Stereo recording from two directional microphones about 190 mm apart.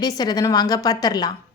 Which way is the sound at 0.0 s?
20° left (ahead or behind).